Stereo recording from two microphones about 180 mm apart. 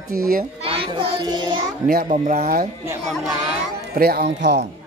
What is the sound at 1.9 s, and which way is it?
Speech, 50° right (ahead or behind).